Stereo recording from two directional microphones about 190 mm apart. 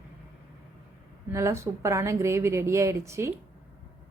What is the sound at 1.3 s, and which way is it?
A woman's voice, 15° right (ahead or behind).